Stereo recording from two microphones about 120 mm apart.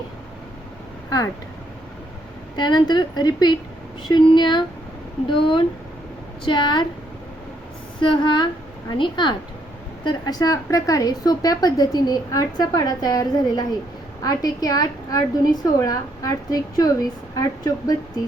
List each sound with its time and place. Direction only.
2.6 s a woman's voice: 35° left (ahead or behind)
8.0 s a woman's voice: 40° left (ahead or behind)